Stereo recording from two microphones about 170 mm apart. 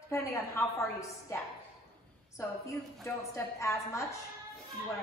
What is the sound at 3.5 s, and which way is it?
Speech, 15° left (ahead or behind).